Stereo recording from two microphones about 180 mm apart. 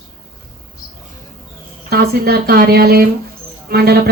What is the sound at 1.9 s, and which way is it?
A woman's voice, 60° right (ahead or behind).